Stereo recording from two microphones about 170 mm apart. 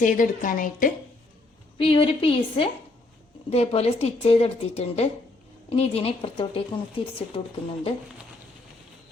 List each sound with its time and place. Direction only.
0.0 s a woman's voice: 50° left (ahead or behind)
1.8 s a woman's voice: 30° left (ahead or behind)